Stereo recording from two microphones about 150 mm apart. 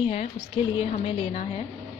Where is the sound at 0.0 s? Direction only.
40° left (ahead or behind).